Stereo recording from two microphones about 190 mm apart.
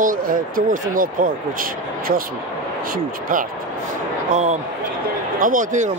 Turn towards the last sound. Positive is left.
turn(degrees=-40)  # may be behind; listen again after turning